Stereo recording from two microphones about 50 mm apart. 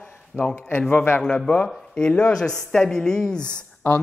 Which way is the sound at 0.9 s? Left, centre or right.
Left.